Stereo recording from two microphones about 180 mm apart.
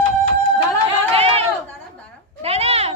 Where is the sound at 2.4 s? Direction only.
35° right (ahead or behind).